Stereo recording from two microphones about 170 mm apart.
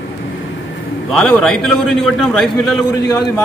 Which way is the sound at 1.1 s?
Centre (ahead or behind).